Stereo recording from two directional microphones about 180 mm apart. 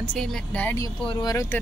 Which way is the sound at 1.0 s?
25° left (ahead or behind).